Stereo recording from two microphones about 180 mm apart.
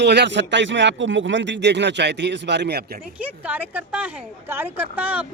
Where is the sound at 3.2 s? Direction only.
10° right (ahead or behind).